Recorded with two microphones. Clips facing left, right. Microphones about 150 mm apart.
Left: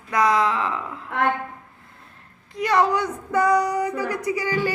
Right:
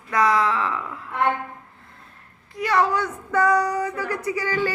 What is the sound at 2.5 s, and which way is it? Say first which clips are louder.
Speech: left 1 dB; 20° left (ahead or behind).